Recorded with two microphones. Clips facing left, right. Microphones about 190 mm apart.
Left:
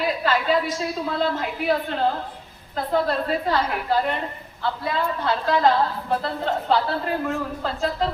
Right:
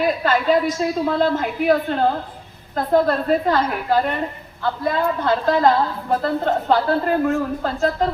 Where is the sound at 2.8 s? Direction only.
50° right (ahead or behind).